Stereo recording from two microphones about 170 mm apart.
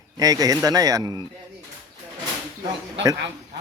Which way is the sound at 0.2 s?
20° right (ahead or behind).